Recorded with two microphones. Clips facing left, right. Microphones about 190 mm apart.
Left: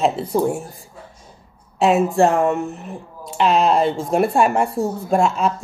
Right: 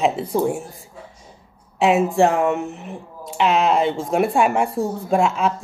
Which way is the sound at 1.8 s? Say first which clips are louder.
Left 1 dB; 15° right (ahead or behind).